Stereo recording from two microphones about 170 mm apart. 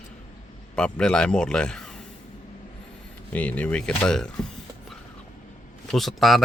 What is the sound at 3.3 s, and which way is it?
Speech, 10° left (ahead or behind).